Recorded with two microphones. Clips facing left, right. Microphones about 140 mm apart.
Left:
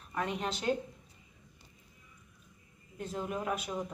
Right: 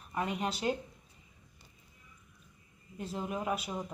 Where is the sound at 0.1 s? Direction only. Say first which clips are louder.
Right 1 dB; 5° right (ahead or behind).